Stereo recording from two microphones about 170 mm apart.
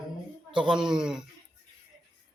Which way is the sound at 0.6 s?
5° right (ahead or behind).